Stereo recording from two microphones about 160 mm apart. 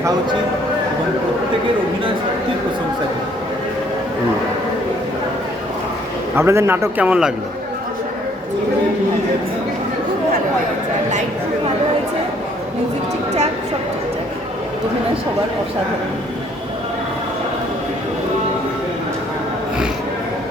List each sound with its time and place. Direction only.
6.3 s a man's voice: 15° right (ahead or behind)